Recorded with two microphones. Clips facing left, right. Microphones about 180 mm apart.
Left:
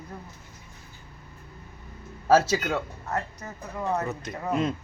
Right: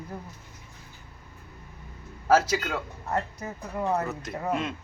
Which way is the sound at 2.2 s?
25° left (ahead or behind).